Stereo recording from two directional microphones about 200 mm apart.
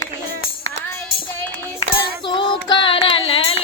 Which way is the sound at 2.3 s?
25° left (ahead or behind).